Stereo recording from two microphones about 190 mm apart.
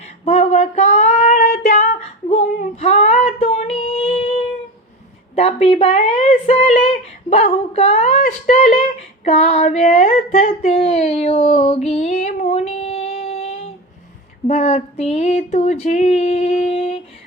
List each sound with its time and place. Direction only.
0.0 s female singing: 35° left (ahead or behind)
5.3 s speech: 35° left (ahead or behind)
14.4 s a sound: 35° left (ahead or behind)
16.6 s humming: 35° left (ahead or behind)